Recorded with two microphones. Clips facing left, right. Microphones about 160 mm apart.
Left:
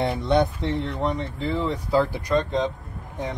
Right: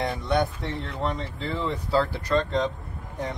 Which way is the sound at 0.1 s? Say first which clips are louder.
Left 4 dB; 25° left (ahead or behind).